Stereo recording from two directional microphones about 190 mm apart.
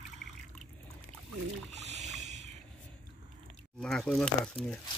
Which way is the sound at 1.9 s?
35° right (ahead or behind).